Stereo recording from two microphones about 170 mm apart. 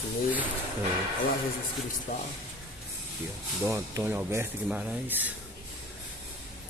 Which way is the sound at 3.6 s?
15° right (ahead or behind).